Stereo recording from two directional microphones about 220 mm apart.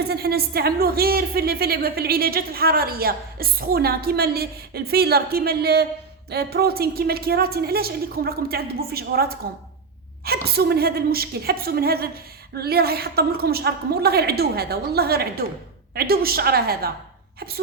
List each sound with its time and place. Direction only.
0.0 s a woman's voice: 45° right (ahead or behind)